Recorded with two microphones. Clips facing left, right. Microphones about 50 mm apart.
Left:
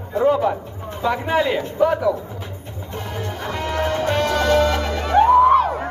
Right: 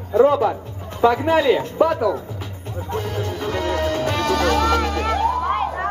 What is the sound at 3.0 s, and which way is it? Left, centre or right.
Music, left.